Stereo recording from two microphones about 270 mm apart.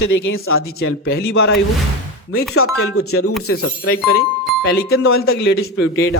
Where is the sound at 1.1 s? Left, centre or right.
Left.